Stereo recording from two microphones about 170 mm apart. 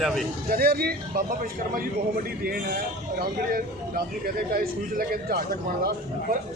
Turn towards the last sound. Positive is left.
turn(degrees=-60)  # may be behind; listen again after turning